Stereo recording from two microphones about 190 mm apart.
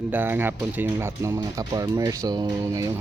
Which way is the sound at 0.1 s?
10° right (ahead or behind).